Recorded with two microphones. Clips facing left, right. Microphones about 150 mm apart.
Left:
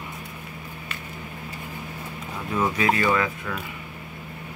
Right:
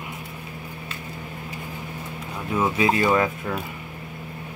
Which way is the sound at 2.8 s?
20° right (ahead or behind).